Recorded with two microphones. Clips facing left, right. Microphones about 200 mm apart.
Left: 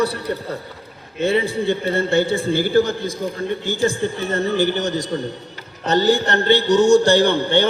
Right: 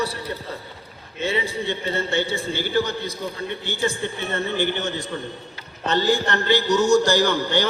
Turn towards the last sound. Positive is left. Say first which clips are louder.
# left 4 dB
turn(degrees=30)  # may be behind; listen again after turning